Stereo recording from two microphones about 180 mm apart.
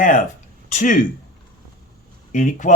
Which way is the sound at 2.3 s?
45° left (ahead or behind).